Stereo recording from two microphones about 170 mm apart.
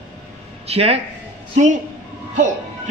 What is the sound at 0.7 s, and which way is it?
A woman's voice, 35° right (ahead or behind).